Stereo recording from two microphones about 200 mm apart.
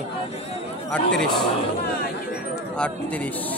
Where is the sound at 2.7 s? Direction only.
5° left (ahead or behind).